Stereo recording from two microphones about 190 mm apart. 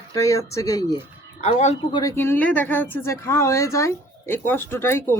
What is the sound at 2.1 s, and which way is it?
Speech, 10° left (ahead or behind).